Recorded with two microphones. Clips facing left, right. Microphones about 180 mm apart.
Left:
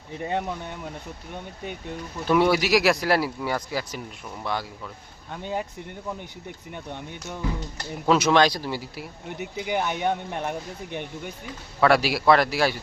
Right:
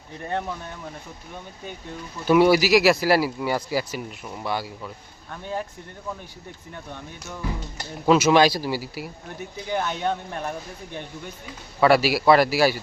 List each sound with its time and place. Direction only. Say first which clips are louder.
0.2 s speech: left 1 dB; 15° left (ahead or behind)
2.2 s speech: right 4 dB; 5° right (ahead or behind)
5.3 s speech: left 1 dB; 20° left (ahead or behind)
6.7 s speech: left 2 dB; 20° left (ahead or behind)
8.0 s speech: right 2 dB; 5° right (ahead or behind)
9.4 s speech: left 1 dB; 15° left (ahead or behind)
11.8 s speech: right 2 dB; centre (ahead or behind)